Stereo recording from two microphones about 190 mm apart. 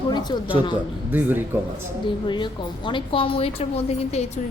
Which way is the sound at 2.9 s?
25° left (ahead or behind).